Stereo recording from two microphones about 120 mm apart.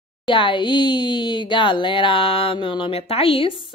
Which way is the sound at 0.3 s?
45° left (ahead or behind).